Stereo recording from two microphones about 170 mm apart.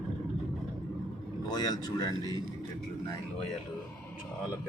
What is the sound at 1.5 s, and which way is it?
Speech, 25° left (ahead or behind).